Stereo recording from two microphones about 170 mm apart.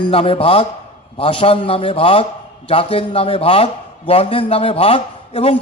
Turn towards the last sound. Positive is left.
turn(degrees=35)  # may be behind; listen again after turning